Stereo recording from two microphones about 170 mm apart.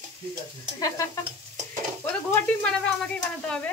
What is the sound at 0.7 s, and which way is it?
Stir, 20° left (ahead or behind).